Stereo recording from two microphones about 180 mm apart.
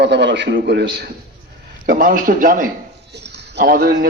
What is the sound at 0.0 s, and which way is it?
A man's voice, 75° right (ahead or behind).